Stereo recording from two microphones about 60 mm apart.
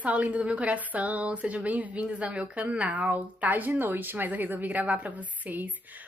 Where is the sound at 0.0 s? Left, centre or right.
Right.